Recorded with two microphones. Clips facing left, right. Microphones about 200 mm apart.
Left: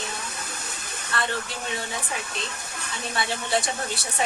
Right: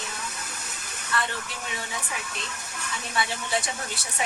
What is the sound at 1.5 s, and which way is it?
Speech, 30° left (ahead or behind).